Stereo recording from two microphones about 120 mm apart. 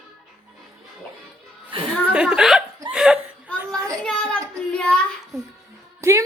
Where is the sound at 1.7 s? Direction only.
45° right (ahead or behind).